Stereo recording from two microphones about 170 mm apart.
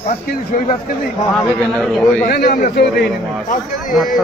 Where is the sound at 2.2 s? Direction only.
60° left (ahead or behind).